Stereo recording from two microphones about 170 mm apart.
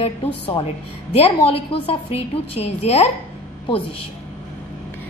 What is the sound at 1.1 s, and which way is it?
A woman's voice, 35° left (ahead or behind).